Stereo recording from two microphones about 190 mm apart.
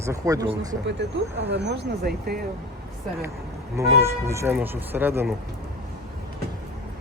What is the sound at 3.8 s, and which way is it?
Speech, 15° right (ahead or behind).